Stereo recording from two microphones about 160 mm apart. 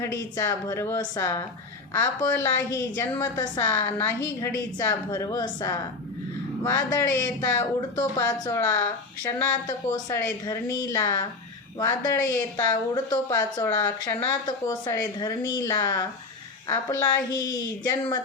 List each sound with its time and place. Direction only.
0.0 s a woman's voice: 20° left (ahead or behind)